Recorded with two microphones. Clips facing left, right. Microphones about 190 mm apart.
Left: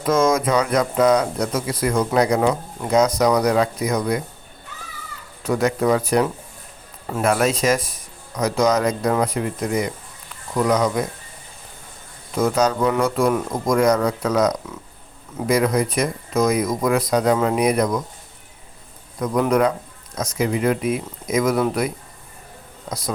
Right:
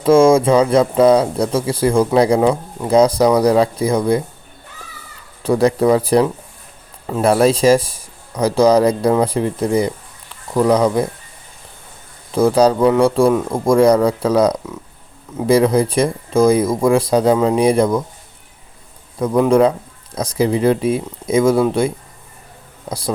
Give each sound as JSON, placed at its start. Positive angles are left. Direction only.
{"t": 0.0, "sound": "speech", "side_deg": -30}
{"t": 5.4, "sound": "speech", "side_deg": -30}
{"t": 12.3, "sound": "speech", "side_deg": -30}
{"t": 19.2, "sound": "speech", "side_deg": -30}